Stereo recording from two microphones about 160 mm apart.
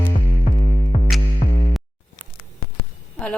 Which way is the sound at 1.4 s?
40° left (ahead or behind).